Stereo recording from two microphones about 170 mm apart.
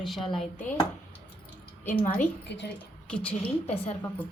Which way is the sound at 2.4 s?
90° left.